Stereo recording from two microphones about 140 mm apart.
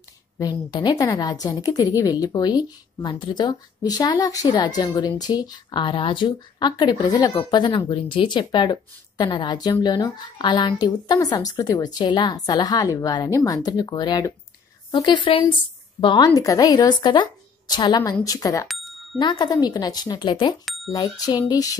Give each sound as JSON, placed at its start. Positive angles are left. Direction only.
{"t": 0.4, "sound": "a woman's voice", "side_deg": 30}